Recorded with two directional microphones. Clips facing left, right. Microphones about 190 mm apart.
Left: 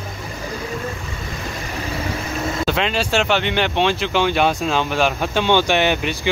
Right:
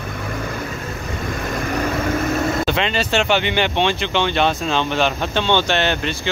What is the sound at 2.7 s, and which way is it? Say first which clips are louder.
Speech: even; 5° left (ahead or behind).